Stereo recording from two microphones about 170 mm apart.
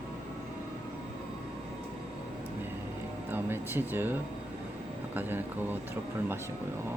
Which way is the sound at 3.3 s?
15° right (ahead or behind).